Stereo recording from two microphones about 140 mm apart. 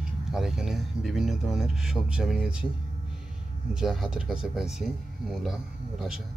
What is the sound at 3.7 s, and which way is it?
Speech, 5° right (ahead or behind).